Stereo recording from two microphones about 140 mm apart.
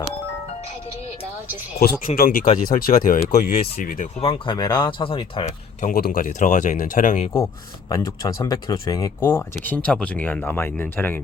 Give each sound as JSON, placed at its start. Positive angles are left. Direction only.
{"t": 1.8, "sound": "speech", "side_deg": 90}
{"t": 2.5, "sound": "speech", "side_deg": 75}
{"t": 4.4, "sound": "speech", "side_deg": 30}
{"t": 5.8, "sound": "speech", "side_deg": 90}
{"t": 7.4, "sound": "speech", "side_deg": 20}
{"t": 9.2, "sound": "speech", "side_deg": 15}